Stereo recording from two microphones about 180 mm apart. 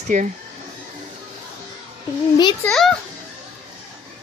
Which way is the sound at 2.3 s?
20° left (ahead or behind).